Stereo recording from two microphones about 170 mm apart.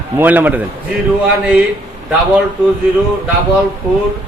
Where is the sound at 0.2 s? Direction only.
10° right (ahead or behind).